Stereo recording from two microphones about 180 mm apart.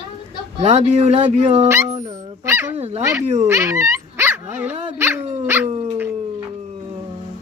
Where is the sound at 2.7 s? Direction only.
35° right (ahead or behind).